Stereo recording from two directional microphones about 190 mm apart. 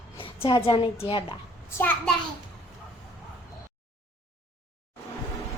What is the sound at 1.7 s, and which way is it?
Speech, 10° left (ahead or behind).